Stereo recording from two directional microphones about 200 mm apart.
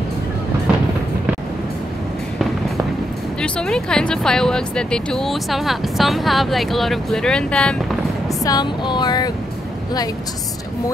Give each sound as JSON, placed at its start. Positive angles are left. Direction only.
{"t": 3.3, "sound": "speech", "side_deg": 5}
{"t": 8.5, "sound": "music", "side_deg": 20}